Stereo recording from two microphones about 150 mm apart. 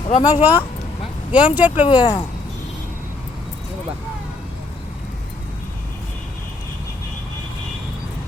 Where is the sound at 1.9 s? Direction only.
30° left (ahead or behind).